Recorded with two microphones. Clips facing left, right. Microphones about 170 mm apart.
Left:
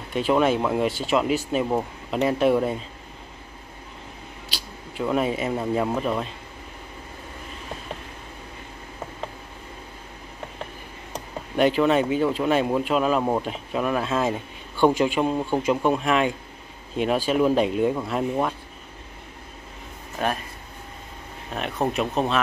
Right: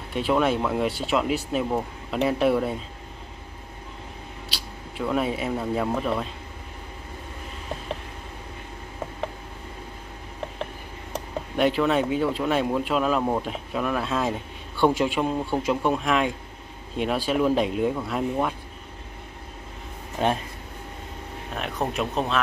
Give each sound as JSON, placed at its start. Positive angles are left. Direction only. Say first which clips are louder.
{"t": 0.1, "sound": "speech", "louder": "left 2 dB", "side_deg": 0}
{"t": 4.5, "sound": "a sound", "louder": "even", "side_deg": 0}
{"t": 5.0, "sound": "speech", "louder": "left 2 dB", "side_deg": 0}
{"t": 11.5, "sound": "speech", "louder": "left 2 dB", "side_deg": 0}
{"t": 20.2, "sound": "speech", "louder": "right 2 dB", "side_deg": -25}
{"t": 21.5, "sound": "speech", "louder": "left 3 dB", "side_deg": 0}